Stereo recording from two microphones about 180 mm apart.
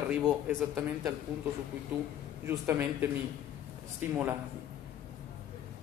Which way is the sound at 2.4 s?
15° right (ahead or behind).